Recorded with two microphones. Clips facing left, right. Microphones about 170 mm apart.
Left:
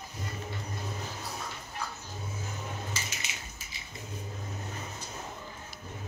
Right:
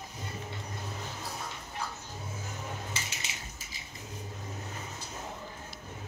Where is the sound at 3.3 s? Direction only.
35° right (ahead or behind).